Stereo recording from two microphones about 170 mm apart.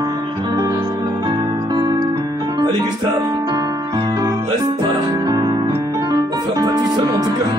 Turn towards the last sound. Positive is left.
turn(degrees=-25)  # may be behind; listen again after turning